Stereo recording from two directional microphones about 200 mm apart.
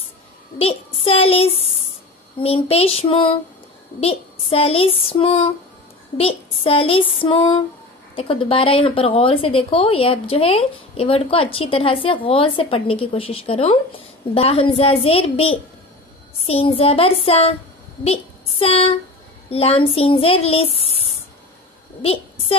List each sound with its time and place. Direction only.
0.6 s a woman's voice: 30° left (ahead or behind)
22.0 s a woman's voice: 30° left (ahead or behind)